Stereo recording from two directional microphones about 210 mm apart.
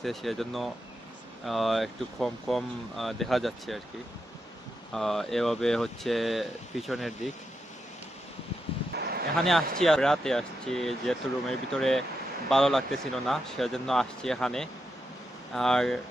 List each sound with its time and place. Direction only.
0.0 s speech: centre (ahead or behind)
4.9 s speech: centre (ahead or behind)
8.9 s a sound: 45° right (ahead or behind)
9.4 s speech: centre (ahead or behind)